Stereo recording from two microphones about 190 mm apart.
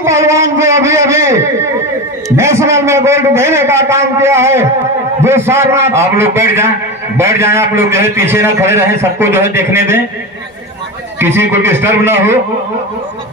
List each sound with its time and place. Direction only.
0.0 s a man's voice: 15° right (ahead or behind)
11.1 s a man's voice: 10° right (ahead or behind)